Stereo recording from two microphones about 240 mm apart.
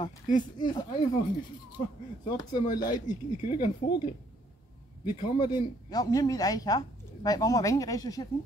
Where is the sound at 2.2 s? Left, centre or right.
Centre.